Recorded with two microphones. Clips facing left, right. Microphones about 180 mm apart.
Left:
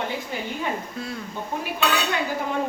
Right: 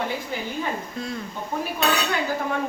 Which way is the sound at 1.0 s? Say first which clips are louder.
Right 1 dB; 5° left (ahead or behind).